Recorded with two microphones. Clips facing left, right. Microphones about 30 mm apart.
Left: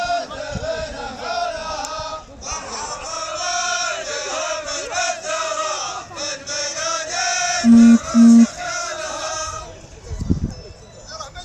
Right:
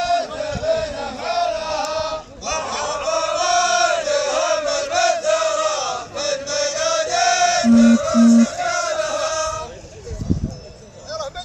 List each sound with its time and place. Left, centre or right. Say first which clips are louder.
0.0 s chant: right 3 dB; centre; by 2.7 s right
2.7 s music: right 9 dB; right
3.3 s chant: right 4 dB; centre